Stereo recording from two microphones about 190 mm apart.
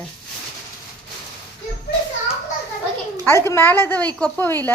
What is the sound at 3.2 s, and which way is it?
Speech, 15° left (ahead or behind).